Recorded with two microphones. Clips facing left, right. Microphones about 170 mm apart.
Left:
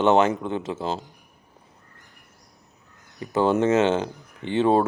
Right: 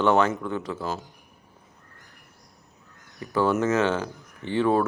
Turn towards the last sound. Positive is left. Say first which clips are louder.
# left 2 dB
turn(degrees=25)  # may be behind; listen again after turning